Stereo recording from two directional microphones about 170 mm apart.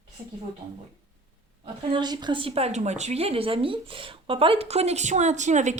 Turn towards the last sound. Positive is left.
turn(degrees=-45)  # may be behind; listen again after turning